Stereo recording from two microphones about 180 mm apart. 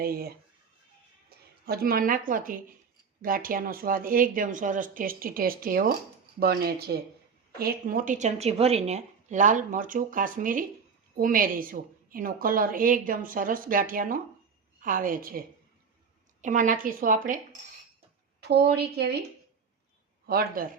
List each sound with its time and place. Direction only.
0.0 s speech: 60° right (ahead or behind)
1.6 s a woman's voice: 60° right (ahead or behind)
18.3 s speech: 65° right (ahead or behind)
20.2 s speech: 55° right (ahead or behind)